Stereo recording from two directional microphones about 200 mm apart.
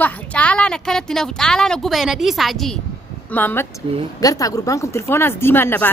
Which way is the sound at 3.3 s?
10° left (ahead or behind).